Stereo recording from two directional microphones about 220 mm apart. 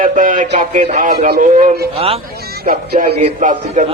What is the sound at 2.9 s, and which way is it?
Speech, 30° right (ahead or behind).